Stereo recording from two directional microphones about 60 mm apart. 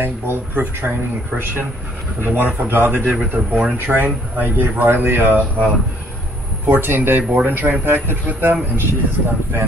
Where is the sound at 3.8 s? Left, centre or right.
Right.